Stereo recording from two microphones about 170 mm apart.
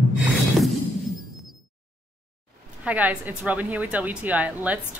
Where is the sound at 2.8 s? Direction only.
10° right (ahead or behind).